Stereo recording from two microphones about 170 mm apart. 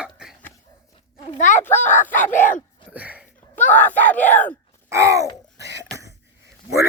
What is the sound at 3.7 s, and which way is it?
Speech, 10° left (ahead or behind).